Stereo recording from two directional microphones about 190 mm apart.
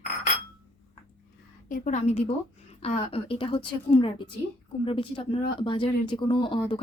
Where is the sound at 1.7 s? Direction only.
45° left (ahead or behind).